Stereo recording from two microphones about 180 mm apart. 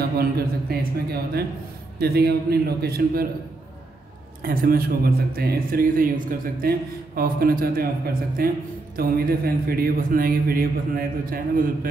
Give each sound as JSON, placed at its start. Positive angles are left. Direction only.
{"t": 0.2, "sound": "a man's voice", "side_deg": -60}
{"t": 4.4, "sound": "a man's voice", "side_deg": -55}